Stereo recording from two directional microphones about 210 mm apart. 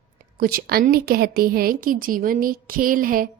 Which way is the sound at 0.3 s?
45° right (ahead or behind).